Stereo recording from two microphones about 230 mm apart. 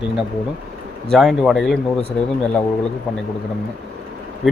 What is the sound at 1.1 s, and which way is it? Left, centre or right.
Speech, centre.